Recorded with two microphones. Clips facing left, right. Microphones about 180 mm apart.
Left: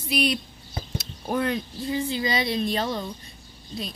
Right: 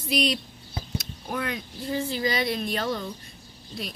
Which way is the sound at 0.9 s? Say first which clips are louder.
Left 5 dB; 30° left (ahead or behind).